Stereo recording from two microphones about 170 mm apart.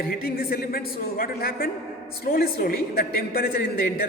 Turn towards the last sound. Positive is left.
turn(degrees=60)  # may be behind; listen again after turning